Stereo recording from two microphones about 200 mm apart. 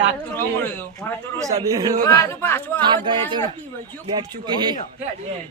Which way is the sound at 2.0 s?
15° left (ahead or behind).